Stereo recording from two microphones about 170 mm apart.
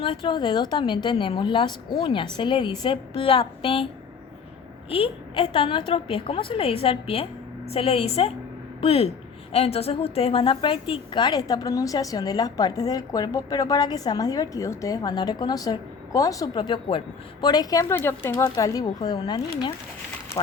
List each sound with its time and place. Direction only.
0.0 s a woman's voice: 30° left (ahead or behind)
4.9 s a woman's voice: 35° left (ahead or behind)